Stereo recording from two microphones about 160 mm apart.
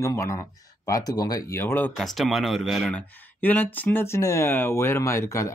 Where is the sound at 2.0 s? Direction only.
Centre (ahead or behind).